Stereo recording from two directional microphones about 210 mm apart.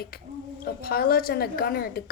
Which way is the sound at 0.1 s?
45° left (ahead or behind).